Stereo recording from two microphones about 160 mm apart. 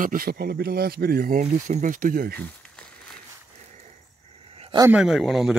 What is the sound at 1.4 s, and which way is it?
Speech, 45° right (ahead or behind).